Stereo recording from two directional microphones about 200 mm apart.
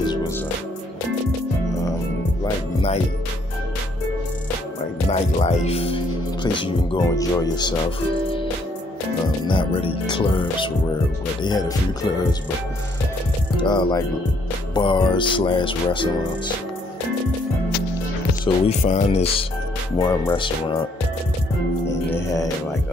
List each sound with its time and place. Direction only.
5.1 s speech: 35° left (ahead or behind)
9.5 s speech: 25° left (ahead or behind)
13.6 s speech: 20° left (ahead or behind)
18.4 s speech: 35° left (ahead or behind)